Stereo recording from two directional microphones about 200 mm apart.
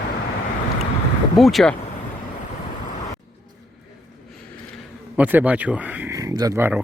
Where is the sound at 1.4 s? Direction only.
Centre (ahead or behind).